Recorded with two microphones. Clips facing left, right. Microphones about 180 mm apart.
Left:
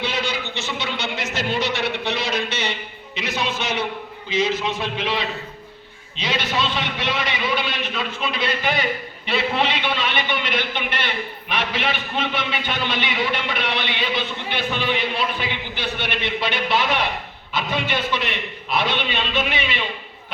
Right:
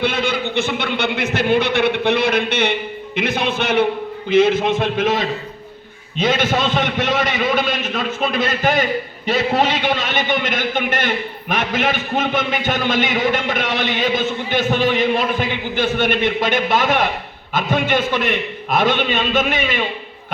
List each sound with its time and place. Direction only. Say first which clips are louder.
0.0 s a sound: right 6 dB; 55° right (ahead or behind)
3.2 s music: right 6 dB; 55° right (ahead or behind)
4.3 s a man's voice: right 8 dB; 55° right (ahead or behind)